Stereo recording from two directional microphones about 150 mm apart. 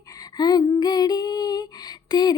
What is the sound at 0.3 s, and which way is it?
Female singing, 25° left (ahead or behind).